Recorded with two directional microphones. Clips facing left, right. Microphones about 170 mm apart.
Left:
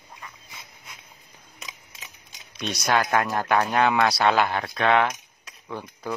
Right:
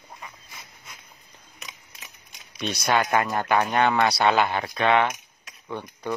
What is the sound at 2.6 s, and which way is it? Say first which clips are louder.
Speech: even; centre (ahead or behind).